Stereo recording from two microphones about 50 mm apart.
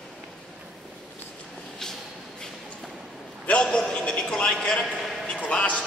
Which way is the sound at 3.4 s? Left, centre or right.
Left.